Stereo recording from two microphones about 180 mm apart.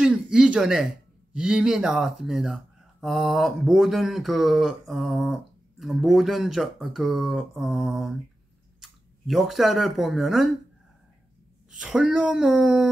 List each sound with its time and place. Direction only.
0.0 s speech: 5° right (ahead or behind)
11.7 s speech: 5° right (ahead or behind)